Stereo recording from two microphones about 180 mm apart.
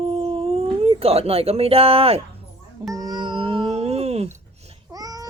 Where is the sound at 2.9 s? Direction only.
20° right (ahead or behind).